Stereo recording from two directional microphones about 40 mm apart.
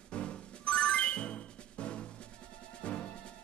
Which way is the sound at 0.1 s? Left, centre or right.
Left.